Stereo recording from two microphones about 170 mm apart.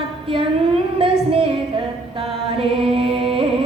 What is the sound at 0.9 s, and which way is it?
Child singing, 30° right (ahead or behind).